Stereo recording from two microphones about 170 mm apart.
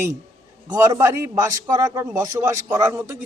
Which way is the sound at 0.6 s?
20° right (ahead or behind).